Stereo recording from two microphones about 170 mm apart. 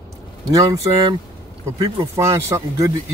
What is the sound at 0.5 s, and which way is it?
Speech, 20° right (ahead or behind).